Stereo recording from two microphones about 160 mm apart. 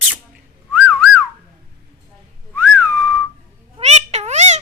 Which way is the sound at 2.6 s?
10° right (ahead or behind).